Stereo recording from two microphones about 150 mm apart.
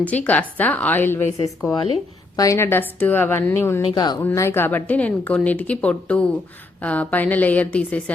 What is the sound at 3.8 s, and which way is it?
Speech, 30° left (ahead or behind).